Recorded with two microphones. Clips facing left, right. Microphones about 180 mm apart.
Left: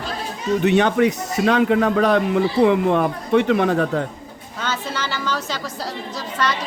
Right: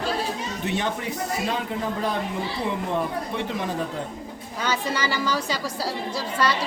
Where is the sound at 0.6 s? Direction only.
70° left (ahead or behind).